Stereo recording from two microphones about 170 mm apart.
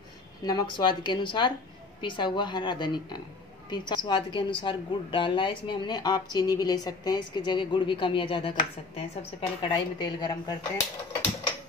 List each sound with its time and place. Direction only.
0.4 s speech: 25° left (ahead or behind)